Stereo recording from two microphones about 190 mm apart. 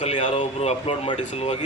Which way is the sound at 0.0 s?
40° left (ahead or behind).